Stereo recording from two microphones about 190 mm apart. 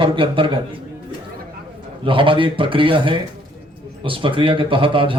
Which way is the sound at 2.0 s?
25° right (ahead or behind).